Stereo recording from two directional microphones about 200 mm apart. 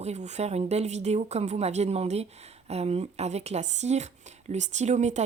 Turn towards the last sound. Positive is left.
turn(degrees=-35)  # may be behind; listen again after turning